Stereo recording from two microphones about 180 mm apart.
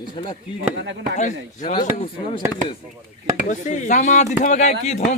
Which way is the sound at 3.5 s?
40° left (ahead or behind).